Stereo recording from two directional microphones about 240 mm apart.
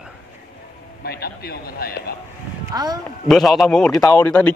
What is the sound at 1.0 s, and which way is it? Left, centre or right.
Speech, left.